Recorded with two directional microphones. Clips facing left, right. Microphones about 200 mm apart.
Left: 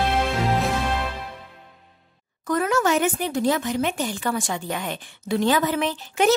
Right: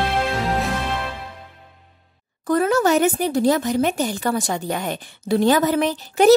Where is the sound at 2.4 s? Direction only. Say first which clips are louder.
Right 4 dB; 35° right (ahead or behind).